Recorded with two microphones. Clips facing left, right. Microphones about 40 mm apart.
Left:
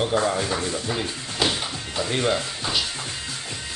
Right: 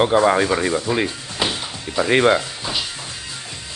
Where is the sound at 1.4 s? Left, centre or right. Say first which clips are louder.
Right 1 dB; right.